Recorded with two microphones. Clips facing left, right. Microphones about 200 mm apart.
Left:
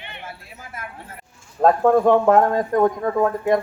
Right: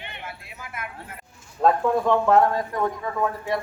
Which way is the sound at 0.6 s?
35° left (ahead or behind).